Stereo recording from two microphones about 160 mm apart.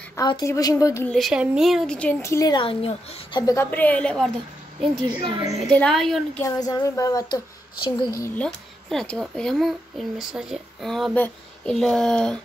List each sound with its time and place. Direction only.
0.2 s speech: 25° left (ahead or behind)
1.0 s a child's voice: centre (ahead or behind); by 2.5 s 15° left (ahead or behind)
2.5 s a woman's voice: 35° left (ahead or behind)
3.4 s a woman's voice: 15° left (ahead or behind)
5.0 s a woman's voice: 30° right (ahead or behind)
5.4 s a child's voice: 5° left (ahead or behind)
6.4 s speech: 20° left (ahead or behind)
8.4 s a child's voice: 5° left (ahead or behind)